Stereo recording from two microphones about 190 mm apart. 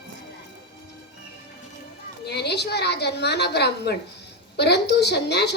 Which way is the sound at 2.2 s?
60° left (ahead or behind).